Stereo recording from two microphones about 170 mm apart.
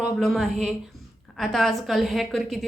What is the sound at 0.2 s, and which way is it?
A woman's voice, centre (ahead or behind).